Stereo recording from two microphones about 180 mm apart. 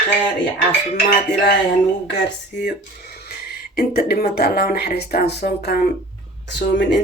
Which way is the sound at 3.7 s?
60° left (ahead or behind).